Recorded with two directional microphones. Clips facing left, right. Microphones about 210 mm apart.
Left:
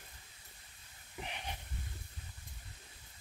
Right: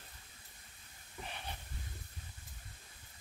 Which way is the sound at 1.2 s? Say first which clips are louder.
Left 2 dB; 15° left (ahead or behind).